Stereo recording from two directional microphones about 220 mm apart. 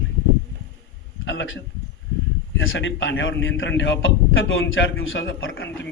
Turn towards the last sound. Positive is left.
turn(degrees=60)  # may be behind; listen again after turning